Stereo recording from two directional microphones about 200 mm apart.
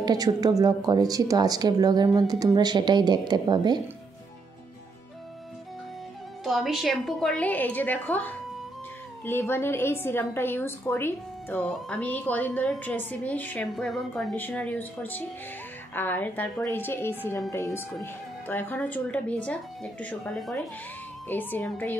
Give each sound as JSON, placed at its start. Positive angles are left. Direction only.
{"t": 0.0, "sound": "speech", "side_deg": -20}
{"t": 6.4, "sound": "a woman's voice", "side_deg": 0}